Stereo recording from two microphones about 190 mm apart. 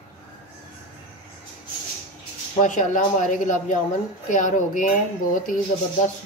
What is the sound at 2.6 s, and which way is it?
Speech, 40° left (ahead or behind).